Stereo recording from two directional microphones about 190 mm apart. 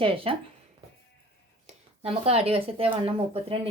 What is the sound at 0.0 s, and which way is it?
Speech, 30° right (ahead or behind).